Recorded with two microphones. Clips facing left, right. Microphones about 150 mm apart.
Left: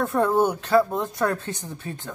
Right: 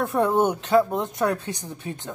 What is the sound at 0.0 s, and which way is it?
Speech, 15° right (ahead or behind).